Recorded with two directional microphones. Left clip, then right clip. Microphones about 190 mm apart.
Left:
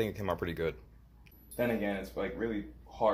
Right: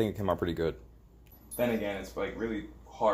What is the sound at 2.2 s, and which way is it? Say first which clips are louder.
Speech: right 3 dB; 10° left (ahead or behind).